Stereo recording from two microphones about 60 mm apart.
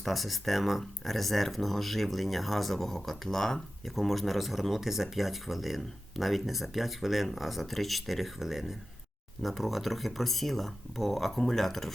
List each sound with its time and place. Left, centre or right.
0.0 s speech: centre